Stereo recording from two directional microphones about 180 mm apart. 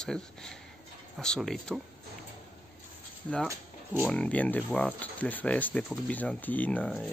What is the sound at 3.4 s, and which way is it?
Speech, 15° right (ahead or behind).